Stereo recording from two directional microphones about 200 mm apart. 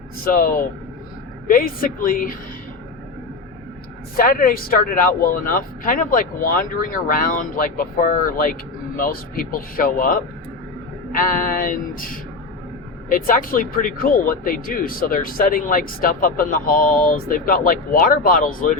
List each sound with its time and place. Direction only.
0.3 s speech: 45° left (ahead or behind)
4.2 s speech: 45° left (ahead or behind)